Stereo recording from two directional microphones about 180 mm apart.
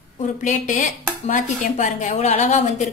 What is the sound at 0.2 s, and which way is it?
A woman's voice, 45° left (ahead or behind).